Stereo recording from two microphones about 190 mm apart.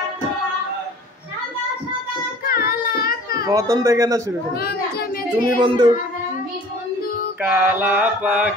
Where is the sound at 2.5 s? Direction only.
50° left (ahead or behind).